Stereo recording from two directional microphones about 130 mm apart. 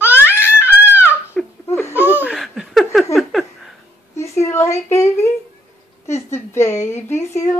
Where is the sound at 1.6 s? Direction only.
20° left (ahead or behind).